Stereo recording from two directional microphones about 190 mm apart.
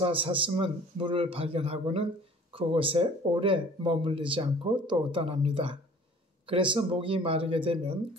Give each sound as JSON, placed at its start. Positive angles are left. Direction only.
{"t": 0.0, "sound": "speech", "side_deg": -25}